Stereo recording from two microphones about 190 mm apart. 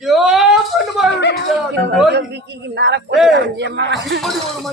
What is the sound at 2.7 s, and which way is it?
A man's voice, 65° right (ahead or behind).